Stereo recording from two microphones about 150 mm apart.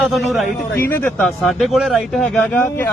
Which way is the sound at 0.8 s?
15° left (ahead or behind).